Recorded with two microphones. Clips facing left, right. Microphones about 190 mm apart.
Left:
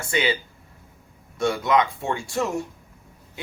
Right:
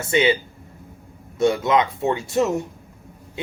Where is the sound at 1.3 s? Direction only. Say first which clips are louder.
Right 3 dB; 25° right (ahead or behind).